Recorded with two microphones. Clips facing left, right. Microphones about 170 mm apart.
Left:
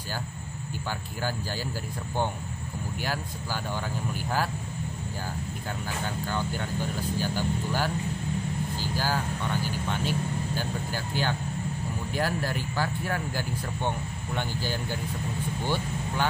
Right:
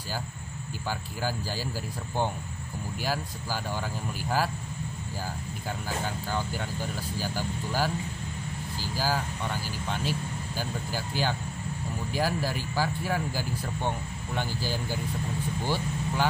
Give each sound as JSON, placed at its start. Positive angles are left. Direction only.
{"t": 6.0, "sound": "speech", "side_deg": -5}
{"t": 8.9, "sound": "speech", "side_deg": -5}
{"t": 10.6, "sound": "speech", "side_deg": -5}